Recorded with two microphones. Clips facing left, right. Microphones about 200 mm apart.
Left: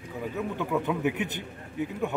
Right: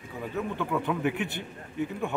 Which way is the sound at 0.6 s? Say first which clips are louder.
Left 2 dB; 15° left (ahead or behind).